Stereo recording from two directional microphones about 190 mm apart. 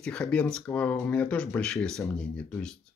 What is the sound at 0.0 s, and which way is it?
Speech, 5° left (ahead or behind).